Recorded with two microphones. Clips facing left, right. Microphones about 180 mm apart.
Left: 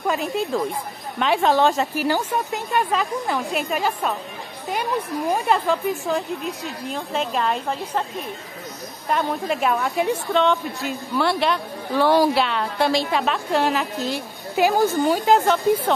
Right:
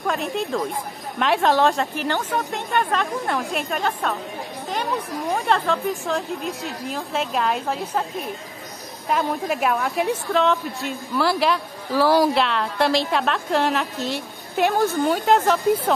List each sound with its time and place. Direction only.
0.0 s a woman's voice: centre (ahead or behind)
5.3 s a woman's voice: 5° left (ahead or behind)
9.1 s a woman's voice: 5° right (ahead or behind)